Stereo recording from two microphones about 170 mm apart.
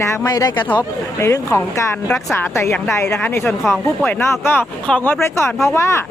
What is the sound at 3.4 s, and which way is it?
Speech, centre (ahead or behind).